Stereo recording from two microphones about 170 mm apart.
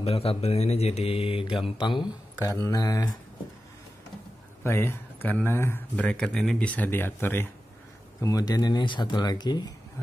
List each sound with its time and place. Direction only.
0.0 s speech: 35° left (ahead or behind)
4.6 s speech: 15° left (ahead or behind)